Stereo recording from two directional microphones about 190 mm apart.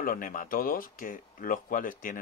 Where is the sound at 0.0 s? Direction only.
50° left (ahead or behind).